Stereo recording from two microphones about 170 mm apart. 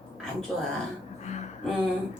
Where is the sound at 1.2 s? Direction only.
40° left (ahead or behind).